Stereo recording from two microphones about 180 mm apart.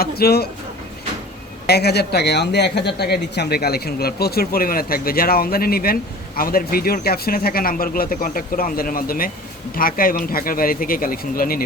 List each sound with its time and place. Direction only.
0.0 s speech: 60° left (ahead or behind)
1.6 s speech: 65° left (ahead or behind)